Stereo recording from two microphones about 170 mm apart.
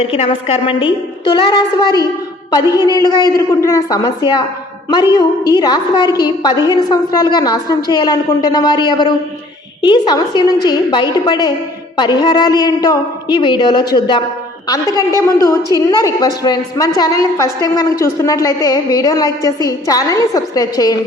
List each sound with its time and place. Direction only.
0.1 s a woman's voice: 35° left (ahead or behind)